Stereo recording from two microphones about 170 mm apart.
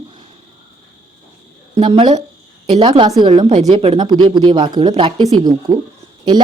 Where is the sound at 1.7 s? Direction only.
35° right (ahead or behind).